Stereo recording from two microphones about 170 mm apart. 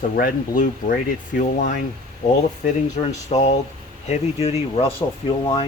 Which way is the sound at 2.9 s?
40° left (ahead or behind).